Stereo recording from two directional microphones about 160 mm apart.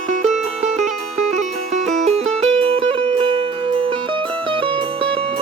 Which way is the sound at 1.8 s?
40° right (ahead or behind).